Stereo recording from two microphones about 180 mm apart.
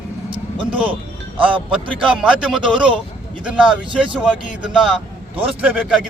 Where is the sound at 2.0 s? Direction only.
5° right (ahead or behind).